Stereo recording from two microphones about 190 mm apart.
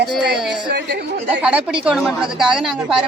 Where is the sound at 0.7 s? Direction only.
65° right (ahead or behind).